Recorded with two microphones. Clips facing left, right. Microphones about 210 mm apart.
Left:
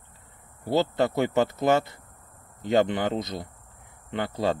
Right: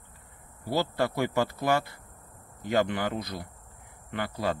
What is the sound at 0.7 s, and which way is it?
Speech, 20° left (ahead or behind).